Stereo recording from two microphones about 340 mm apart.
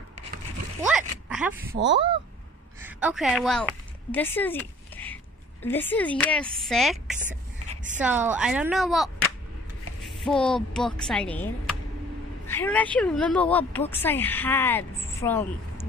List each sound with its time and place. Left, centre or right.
0.8 s a sound: centre
1.8 s speech: right
2.8 s a woman's voice: centre
7.2 s a sound: right
8.0 s speech: centre
10.1 s speech: centre